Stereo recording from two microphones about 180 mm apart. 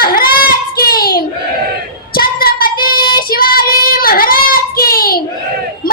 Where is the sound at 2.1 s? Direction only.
55° left (ahead or behind).